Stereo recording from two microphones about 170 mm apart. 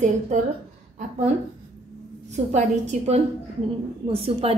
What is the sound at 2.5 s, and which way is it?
A woman's voice, 45° right (ahead or behind).